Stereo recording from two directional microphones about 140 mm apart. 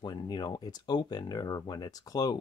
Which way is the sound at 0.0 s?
30° left (ahead or behind).